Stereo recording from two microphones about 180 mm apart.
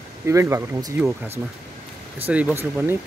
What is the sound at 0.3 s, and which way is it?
Speech, 15° right (ahead or behind).